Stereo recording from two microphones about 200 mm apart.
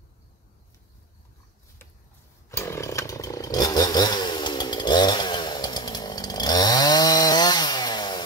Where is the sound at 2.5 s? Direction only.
15° left (ahead or behind).